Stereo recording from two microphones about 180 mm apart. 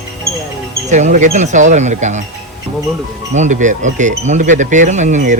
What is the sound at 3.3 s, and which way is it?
Speech, 40° right (ahead or behind).